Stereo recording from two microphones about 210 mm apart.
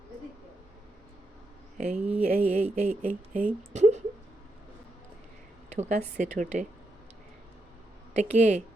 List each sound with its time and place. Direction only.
2.0 s a sound: 5° right (ahead or behind)
2.2 s speech: 30° right (ahead or behind)
5.6 s a woman's voice: 35° right (ahead or behind)
8.1 s speech: 35° right (ahead or behind)